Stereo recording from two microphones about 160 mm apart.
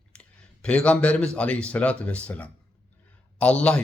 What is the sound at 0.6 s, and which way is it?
A man's voice, 5° left (ahead or behind).